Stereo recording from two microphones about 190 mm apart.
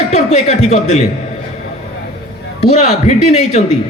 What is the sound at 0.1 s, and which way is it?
Speech, 35° left (ahead or behind).